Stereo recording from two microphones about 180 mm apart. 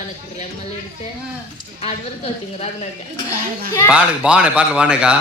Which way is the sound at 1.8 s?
35° left (ahead or behind).